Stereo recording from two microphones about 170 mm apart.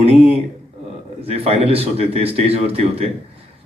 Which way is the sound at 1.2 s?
35° right (ahead or behind).